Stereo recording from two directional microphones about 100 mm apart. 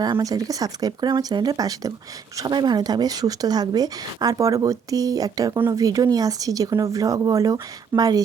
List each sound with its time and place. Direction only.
0.0 s speech: 40° right (ahead or behind)